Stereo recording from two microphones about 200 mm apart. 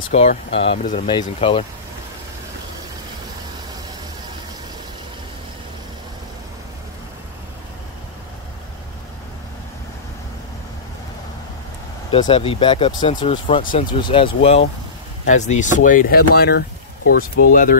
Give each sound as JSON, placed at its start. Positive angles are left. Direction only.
{"t": 0.1, "sound": "speech", "side_deg": 30}
{"t": 12.1, "sound": "speech", "side_deg": 25}